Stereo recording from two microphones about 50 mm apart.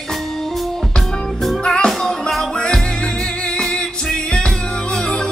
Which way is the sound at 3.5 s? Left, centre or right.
Centre.